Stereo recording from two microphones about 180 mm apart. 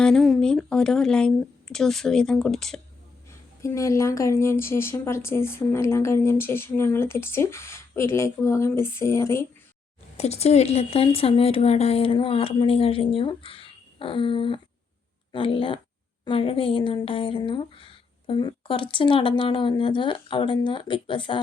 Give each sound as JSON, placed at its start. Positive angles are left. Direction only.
{"t": 0.0, "sound": "a woman's voice", "side_deg": 5}
{"t": 3.2, "sound": "a woman's voice", "side_deg": 15}
{"t": 10.2, "sound": "speech", "side_deg": 35}